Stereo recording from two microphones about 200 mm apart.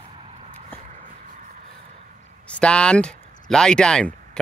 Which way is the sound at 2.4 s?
5° left (ahead or behind).